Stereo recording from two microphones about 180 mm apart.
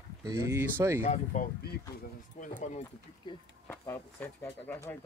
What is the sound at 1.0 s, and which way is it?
Speech, 45° left (ahead or behind).